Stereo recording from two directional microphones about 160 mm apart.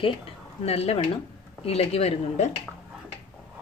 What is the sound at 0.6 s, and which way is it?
A woman's voice, 40° left (ahead or behind).